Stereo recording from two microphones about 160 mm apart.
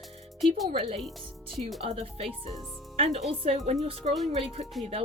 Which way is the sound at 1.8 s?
40° right (ahead or behind).